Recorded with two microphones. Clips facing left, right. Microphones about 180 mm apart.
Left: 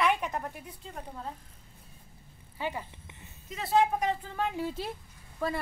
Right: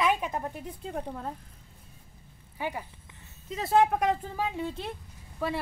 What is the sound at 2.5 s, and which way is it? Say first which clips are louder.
Speech: right 1 dB; 15° right (ahead or behind).